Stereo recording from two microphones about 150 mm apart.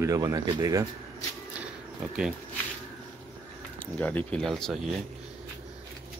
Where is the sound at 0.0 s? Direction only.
25° right (ahead or behind).